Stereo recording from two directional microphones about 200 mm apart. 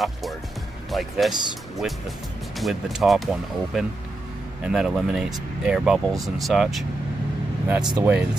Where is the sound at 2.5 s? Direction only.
Centre (ahead or behind).